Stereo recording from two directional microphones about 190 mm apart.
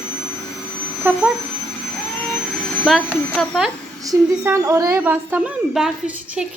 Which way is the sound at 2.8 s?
Centre (ahead or behind).